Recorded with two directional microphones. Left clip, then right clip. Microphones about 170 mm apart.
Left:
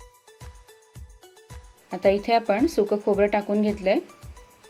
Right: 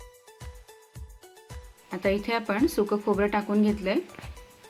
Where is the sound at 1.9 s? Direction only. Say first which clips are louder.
Left 7 dB; 20° left (ahead or behind).